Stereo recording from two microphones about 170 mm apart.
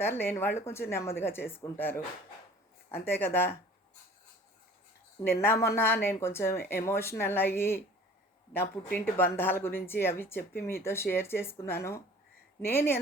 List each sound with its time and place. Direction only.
0.0 s a woman's voice: 15° left (ahead or behind)
3.1 s a woman's voice: 15° left (ahead or behind)
5.2 s a woman's voice: 15° left (ahead or behind)
8.9 s a woman's voice: 10° left (ahead or behind)